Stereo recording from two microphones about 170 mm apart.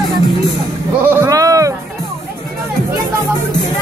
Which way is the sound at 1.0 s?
15° right (ahead or behind).